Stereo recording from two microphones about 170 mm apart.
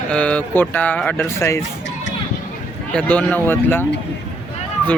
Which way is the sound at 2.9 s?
10° left (ahead or behind).